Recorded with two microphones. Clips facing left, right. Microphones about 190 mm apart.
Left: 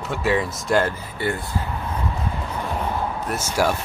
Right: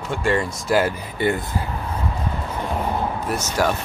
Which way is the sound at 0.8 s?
20° right (ahead or behind).